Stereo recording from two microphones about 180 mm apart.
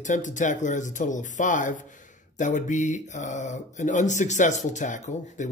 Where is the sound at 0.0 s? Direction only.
45° left (ahead or behind).